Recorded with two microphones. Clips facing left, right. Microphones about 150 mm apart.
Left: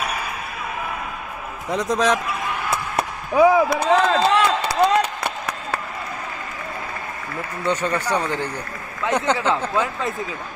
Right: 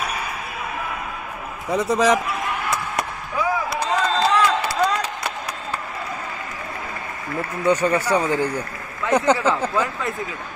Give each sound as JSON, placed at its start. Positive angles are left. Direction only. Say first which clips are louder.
{"t": 1.7, "sound": "speech", "louder": "right 2 dB", "side_deg": -5}
{"t": 3.3, "sound": "a sound", "louder": "left 8 dB", "side_deg": 60}
{"t": 7.6, "sound": "speech", "louder": "right 4 dB", "side_deg": -10}